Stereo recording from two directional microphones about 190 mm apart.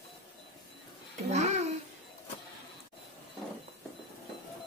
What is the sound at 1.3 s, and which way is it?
Babbling, 35° right (ahead or behind).